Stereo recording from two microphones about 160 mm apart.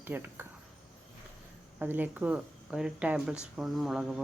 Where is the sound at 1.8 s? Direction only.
10° right (ahead or behind).